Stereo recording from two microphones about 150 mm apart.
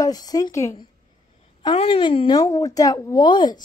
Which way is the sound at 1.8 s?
35° left (ahead or behind).